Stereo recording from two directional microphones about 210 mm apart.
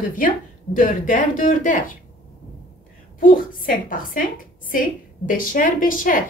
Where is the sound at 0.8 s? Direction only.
40° left (ahead or behind).